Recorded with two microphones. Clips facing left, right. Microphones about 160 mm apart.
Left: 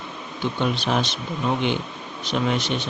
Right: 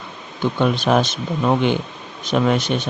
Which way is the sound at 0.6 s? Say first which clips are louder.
Right 6 dB; 50° right (ahead or behind).